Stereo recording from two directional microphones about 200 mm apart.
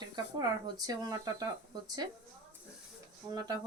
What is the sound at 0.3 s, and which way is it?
Speech, 20° right (ahead or behind).